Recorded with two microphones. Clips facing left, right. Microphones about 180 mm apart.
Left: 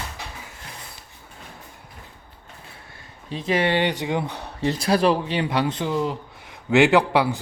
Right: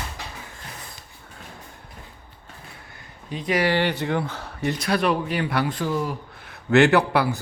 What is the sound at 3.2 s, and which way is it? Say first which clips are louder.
Speech: even; 25° left (ahead or behind).